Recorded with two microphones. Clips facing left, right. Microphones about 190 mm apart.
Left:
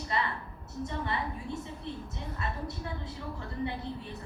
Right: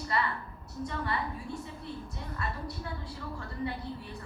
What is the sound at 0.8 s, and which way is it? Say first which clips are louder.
A woman's voice: even; 20° left (ahead or behind).